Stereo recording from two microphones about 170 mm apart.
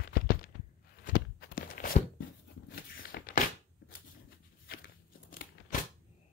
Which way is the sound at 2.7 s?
60° left (ahead or behind).